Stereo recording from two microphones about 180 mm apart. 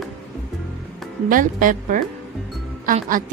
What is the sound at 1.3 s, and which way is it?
A woman's voice, 50° right (ahead or behind).